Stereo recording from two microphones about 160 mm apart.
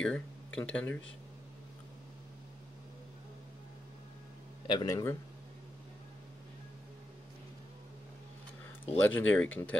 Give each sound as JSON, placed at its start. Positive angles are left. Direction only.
{"t": 0.0, "sound": "speech", "side_deg": 5}
{"t": 4.6, "sound": "speech", "side_deg": 25}
{"t": 9.0, "sound": "speech", "side_deg": 10}